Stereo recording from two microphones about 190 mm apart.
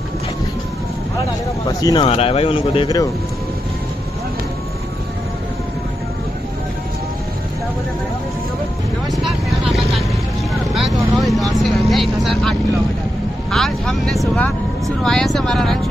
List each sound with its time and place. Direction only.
1.8 s speech: 20° left (ahead or behind)
2.0 s speech: 30° left (ahead or behind)
9.0 s vehicle: centre (ahead or behind)
11.1 s speech: centre (ahead or behind)